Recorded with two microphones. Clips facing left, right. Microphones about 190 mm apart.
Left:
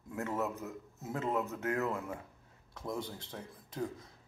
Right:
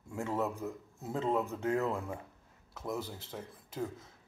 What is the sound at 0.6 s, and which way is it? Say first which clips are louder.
Speech: right 3 dB; 30° right (ahead or behind).